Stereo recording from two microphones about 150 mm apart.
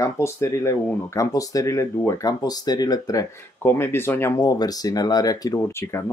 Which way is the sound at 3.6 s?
15° left (ahead or behind).